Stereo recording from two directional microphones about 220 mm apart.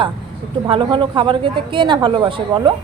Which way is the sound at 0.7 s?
20° right (ahead or behind).